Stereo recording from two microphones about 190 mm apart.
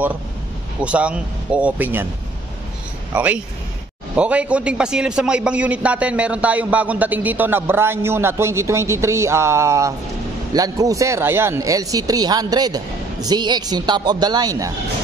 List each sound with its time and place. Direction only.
0.7 s a man's voice: 5° right (ahead or behind)
3.1 s a man's voice: 5° right (ahead or behind)